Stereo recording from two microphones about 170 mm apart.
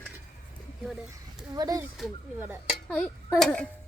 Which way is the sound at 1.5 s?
20° right (ahead or behind).